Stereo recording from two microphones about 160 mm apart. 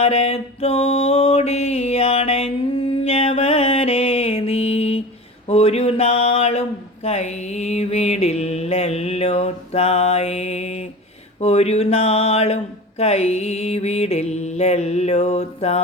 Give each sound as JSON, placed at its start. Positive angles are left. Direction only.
{"t": 0.0, "sound": "mantra", "side_deg": 40}
{"t": 5.5, "sound": "speech", "side_deg": 40}